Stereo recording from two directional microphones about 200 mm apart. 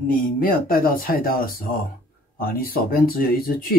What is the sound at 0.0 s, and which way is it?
Speech, 45° left (ahead or behind).